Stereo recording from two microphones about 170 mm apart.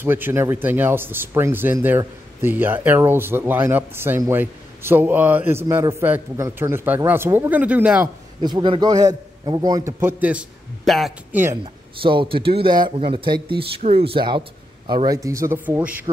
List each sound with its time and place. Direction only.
0.0 s speech: 10° right (ahead or behind)
8.4 s a man's voice: 25° right (ahead or behind); by 10.4 s 10° right (ahead or behind)
10.9 s speech: centre (ahead or behind)
11.6 s speech: 30° right (ahead or behind); by 16.1 s 10° right (ahead or behind)